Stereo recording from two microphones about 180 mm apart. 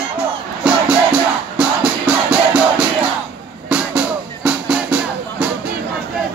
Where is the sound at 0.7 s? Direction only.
5° right (ahead or behind).